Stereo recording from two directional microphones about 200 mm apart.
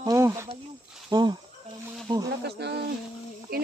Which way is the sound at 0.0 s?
15° right (ahead or behind).